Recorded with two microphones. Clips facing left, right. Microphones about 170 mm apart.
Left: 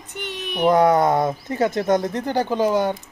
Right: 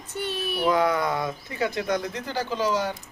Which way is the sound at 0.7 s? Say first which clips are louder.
Left 7 dB; 45° left (ahead or behind).